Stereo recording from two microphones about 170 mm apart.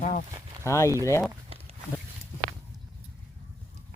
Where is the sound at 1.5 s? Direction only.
35° right (ahead or behind).